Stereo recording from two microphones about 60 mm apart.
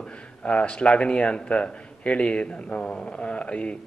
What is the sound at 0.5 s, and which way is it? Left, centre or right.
Speech, centre.